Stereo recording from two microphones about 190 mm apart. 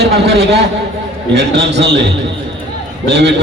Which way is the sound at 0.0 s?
60° right (ahead or behind).